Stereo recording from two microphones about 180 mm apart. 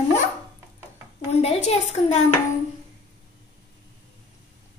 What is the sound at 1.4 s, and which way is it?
Speech, 35° left (ahead or behind).